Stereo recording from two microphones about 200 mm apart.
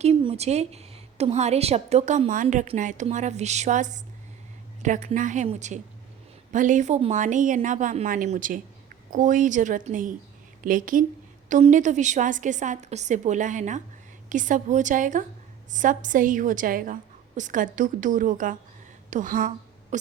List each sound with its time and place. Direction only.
0.0 s a woman's voice: 30° right (ahead or behind)